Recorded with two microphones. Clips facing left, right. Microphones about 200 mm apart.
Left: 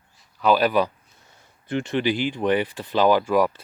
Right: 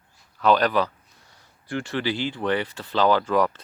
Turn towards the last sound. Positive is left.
turn(degrees=10)  # may be behind; listen again after turning